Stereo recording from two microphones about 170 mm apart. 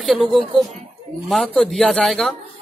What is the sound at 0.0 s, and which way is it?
Speech, centre (ahead or behind).